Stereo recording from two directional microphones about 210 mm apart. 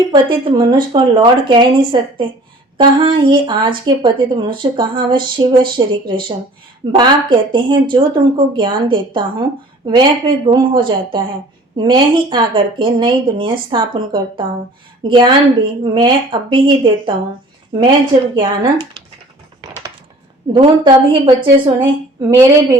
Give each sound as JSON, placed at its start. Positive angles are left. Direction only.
{"t": 0.1, "sound": "a woman's voice", "side_deg": -20}
{"t": 20.5, "sound": "a woman's voice", "side_deg": -20}